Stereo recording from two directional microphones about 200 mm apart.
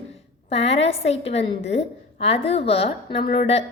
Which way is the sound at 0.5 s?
30° left (ahead or behind).